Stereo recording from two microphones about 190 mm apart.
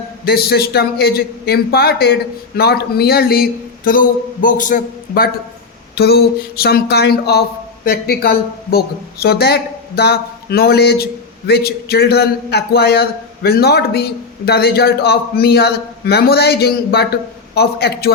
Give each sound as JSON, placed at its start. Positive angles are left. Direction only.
{"t": 0.3, "sound": "a woman's voice", "side_deg": 55}